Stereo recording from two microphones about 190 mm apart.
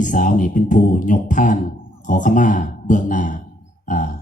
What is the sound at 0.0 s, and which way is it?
Speech, 40° left (ahead or behind).